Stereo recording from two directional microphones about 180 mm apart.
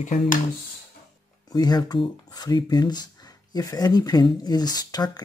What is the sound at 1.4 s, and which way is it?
Speech, 20° left (ahead or behind).